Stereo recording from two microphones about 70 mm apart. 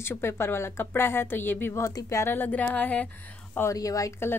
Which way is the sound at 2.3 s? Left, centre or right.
Left.